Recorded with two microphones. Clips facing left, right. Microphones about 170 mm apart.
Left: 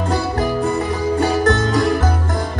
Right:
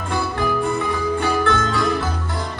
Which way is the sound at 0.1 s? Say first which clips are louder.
Even; 40° left (ahead or behind).